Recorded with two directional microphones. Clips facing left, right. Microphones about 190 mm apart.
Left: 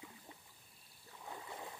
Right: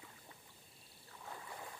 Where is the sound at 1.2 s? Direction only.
20° left (ahead or behind).